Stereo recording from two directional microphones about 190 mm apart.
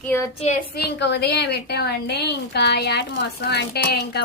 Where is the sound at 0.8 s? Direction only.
65° left (ahead or behind).